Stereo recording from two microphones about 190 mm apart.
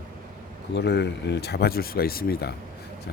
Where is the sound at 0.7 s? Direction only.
60° left (ahead or behind).